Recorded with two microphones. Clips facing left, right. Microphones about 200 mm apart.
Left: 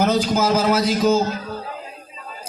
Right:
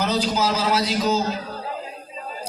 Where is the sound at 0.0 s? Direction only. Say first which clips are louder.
Left 4 dB; 50° left (ahead or behind).